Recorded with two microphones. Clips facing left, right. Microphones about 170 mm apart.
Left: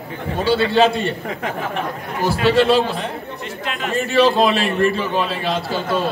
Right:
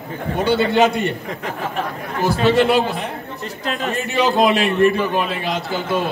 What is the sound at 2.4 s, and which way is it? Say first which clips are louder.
Speech: left 1 dB; 20° right (ahead or behind).